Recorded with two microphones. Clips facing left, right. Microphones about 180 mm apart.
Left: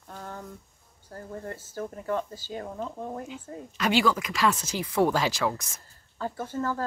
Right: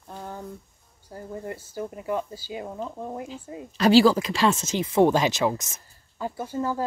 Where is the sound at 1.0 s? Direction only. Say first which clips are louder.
Right 3 dB; 15° right (ahead or behind).